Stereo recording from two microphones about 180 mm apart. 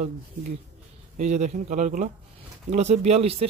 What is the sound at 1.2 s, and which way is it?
Speech, 40° right (ahead or behind).